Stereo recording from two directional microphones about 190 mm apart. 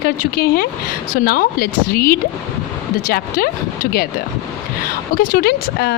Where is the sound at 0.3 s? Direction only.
55° left (ahead or behind).